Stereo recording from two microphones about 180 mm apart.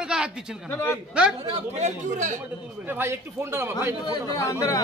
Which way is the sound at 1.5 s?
40° right (ahead or behind).